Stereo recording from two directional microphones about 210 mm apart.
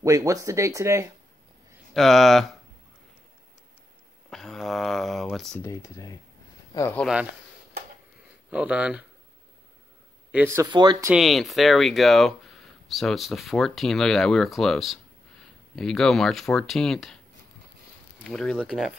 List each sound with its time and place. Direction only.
0.0 s speech: 15° right (ahead or behind)
2.0 s speech: centre (ahead or behind)
4.3 s speech: centre (ahead or behind)
5.6 s speech: 15° left (ahead or behind)
8.5 s speech: 5° right (ahead or behind)
10.3 s speech: 10° right (ahead or behind)
11.1 s speech: centre (ahead or behind)
18.2 s speech: 5° left (ahead or behind)